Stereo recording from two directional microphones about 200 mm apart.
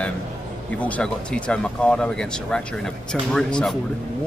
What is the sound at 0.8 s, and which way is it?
Speech, 5° left (ahead or behind).